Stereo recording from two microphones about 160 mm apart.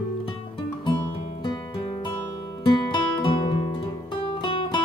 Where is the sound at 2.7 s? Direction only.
30° left (ahead or behind).